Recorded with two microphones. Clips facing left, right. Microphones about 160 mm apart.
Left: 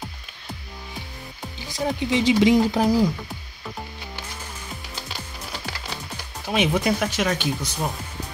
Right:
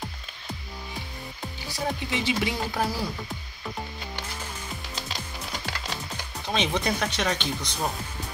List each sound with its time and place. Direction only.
1.7 s speech: 20° left (ahead or behind)
6.4 s speech: 10° left (ahead or behind)